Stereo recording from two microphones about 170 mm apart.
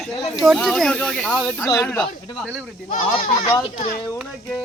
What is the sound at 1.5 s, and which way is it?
Speech, 20° left (ahead or behind).